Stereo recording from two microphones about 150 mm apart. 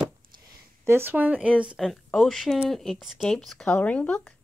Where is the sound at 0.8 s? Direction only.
15° right (ahead or behind); by 4.3 s 10° left (ahead or behind).